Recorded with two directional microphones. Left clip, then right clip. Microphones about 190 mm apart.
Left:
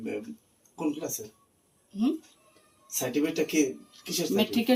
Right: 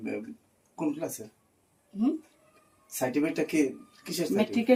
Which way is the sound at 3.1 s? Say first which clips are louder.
Left 2 dB; 45° right (ahead or behind).